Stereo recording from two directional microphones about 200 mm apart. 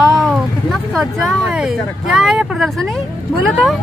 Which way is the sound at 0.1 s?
Centre (ahead or behind).